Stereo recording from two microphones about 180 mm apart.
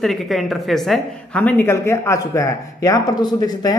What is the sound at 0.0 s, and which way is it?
A woman's voice, centre (ahead or behind).